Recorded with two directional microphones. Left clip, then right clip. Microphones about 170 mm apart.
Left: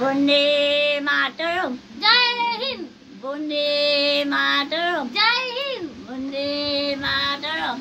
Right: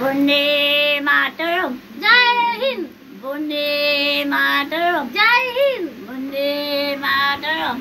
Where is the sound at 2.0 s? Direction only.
45° left (ahead or behind).